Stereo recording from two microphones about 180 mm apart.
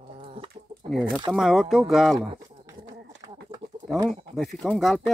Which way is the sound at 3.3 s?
25° right (ahead or behind).